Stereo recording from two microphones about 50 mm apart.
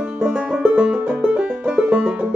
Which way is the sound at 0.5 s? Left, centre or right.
Centre.